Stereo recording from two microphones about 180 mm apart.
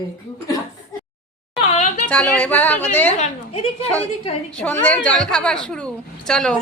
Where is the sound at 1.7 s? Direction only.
40° left (ahead or behind).